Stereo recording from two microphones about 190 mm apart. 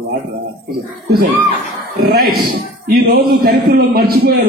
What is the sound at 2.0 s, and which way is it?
A man's voice, 55° right (ahead or behind).